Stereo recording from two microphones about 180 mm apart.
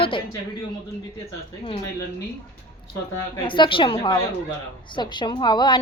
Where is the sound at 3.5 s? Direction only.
30° left (ahead or behind).